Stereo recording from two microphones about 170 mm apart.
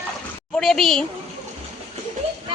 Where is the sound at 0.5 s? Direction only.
Centre (ahead or behind).